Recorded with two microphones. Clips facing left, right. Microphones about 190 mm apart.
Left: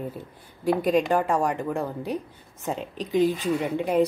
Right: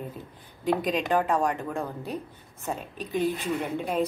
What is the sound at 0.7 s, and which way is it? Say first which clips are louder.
A woman's voice: left 4 dB; 10° left (ahead or behind).